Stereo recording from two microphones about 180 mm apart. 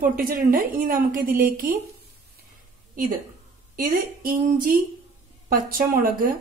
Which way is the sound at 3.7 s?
50° right (ahead or behind).